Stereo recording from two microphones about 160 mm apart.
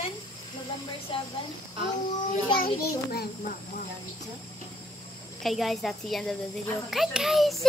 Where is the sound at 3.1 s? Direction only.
60° left (ahead or behind).